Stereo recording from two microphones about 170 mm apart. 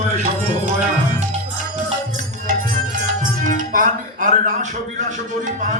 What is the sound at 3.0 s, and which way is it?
Music, 50° right (ahead or behind).